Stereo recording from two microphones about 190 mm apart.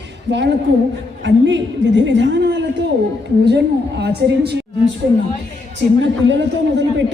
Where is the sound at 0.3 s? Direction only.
70° right (ahead or behind).